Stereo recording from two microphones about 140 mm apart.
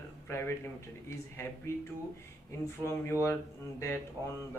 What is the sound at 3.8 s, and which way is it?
Speech, 20° left (ahead or behind).